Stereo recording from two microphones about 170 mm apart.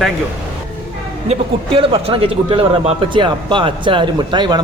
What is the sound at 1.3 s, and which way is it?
Speech, 35° right (ahead or behind).